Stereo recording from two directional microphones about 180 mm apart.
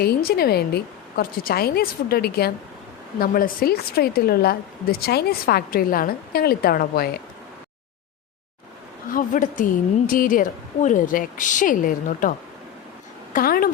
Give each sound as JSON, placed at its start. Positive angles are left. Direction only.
{"t": 0.0, "sound": "a woman's voice", "side_deg": 60}
{"t": 9.1, "sound": "a woman's voice", "side_deg": 45}
{"t": 13.3, "sound": "a woman's voice", "side_deg": 55}